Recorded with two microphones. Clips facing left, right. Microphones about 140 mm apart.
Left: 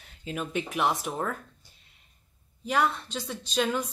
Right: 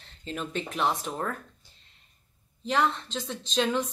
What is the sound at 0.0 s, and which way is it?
Speech, 10° left (ahead or behind).